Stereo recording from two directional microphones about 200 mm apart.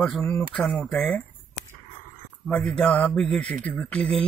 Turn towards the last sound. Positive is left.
turn(degrees=5)  # may be behind; listen again after turning